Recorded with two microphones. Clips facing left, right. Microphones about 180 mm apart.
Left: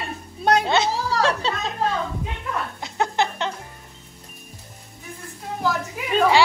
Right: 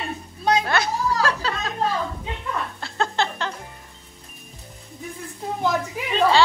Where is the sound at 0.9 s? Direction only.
85° left.